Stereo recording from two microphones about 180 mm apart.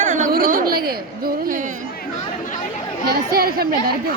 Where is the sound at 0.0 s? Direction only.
45° right (ahead or behind).